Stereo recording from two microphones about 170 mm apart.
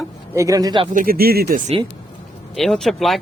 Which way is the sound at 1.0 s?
60° right (ahead or behind).